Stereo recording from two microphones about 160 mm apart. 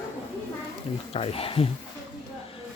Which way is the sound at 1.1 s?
35° left (ahead or behind).